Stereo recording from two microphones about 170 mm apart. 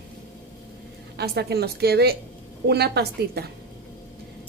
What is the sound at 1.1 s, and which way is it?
Speech, 70° right (ahead or behind).